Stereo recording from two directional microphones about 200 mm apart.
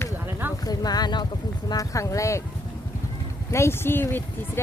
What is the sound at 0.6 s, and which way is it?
Speech, 20° left (ahead or behind).